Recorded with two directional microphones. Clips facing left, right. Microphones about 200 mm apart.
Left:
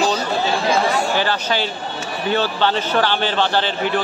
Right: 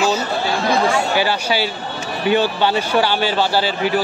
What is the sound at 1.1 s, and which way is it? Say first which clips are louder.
A man's voice: right 2 dB; 10° right (ahead or behind).